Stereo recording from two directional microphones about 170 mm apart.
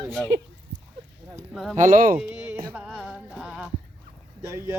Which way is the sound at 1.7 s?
50° right (ahead or behind).